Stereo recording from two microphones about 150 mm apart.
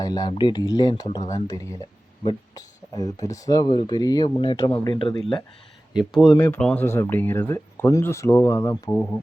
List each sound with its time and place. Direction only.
0.0 s speech: 25° left (ahead or behind)
6.3 s speech: 15° left (ahead or behind)
9.0 s speech: 10° left (ahead or behind)